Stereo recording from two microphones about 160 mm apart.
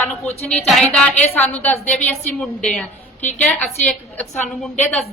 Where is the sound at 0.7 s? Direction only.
5° left (ahead or behind).